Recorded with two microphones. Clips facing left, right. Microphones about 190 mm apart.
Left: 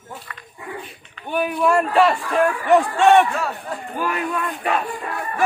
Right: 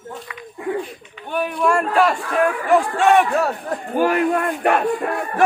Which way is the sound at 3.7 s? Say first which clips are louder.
Right 7 dB; 65° right (ahead or behind).